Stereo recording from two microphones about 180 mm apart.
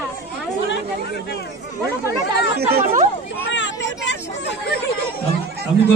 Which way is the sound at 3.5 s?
90° left.